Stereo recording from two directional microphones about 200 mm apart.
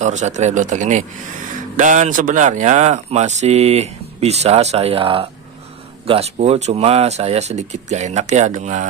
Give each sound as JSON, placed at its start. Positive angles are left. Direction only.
{"t": 0.0, "sound": "speech", "side_deg": -35}